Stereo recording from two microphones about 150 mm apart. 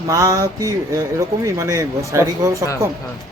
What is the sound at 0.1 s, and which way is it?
Speech, 20° right (ahead or behind).